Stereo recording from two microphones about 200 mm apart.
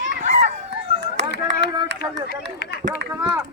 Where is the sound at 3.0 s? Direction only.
60° right (ahead or behind).